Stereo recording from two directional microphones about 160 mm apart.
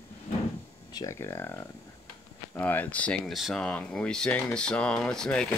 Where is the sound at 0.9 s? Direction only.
20° left (ahead or behind).